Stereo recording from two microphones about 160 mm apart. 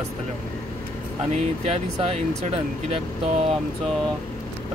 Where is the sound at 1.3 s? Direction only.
40° right (ahead or behind).